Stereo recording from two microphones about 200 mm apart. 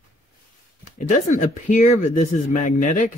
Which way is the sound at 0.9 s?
40° left (ahead or behind).